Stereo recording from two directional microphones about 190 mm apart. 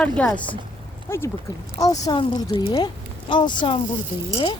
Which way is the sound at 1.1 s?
15° left (ahead or behind).